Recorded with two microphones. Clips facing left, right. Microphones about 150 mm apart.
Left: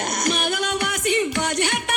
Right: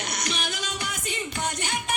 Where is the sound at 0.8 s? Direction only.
70° left (ahead or behind).